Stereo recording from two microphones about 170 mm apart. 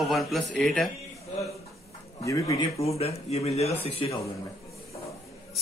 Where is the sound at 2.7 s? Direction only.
35° left (ahead or behind).